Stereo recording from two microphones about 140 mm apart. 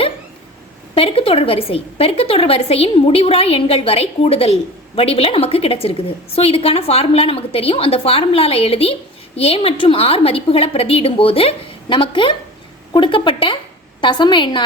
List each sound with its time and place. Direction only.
0.9 s a woman's voice: 45° left (ahead or behind)